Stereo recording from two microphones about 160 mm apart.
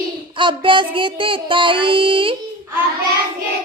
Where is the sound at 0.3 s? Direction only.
30° right (ahead or behind).